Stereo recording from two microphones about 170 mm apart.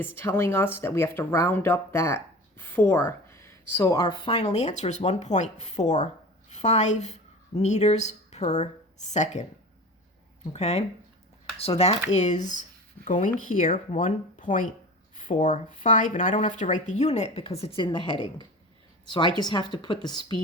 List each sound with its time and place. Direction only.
0.0 s speech: 15° left (ahead or behind); by 9.4 s 45° left (ahead or behind)
10.5 s a woman's voice: 40° left (ahead or behind); by 20.4 s 25° left (ahead or behind)